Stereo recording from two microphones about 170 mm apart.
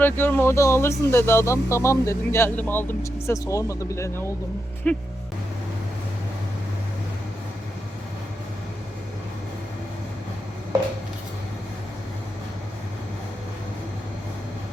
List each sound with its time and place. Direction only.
0.0 s speech: 10° left (ahead or behind)
4.9 s speech: 5° left (ahead or behind)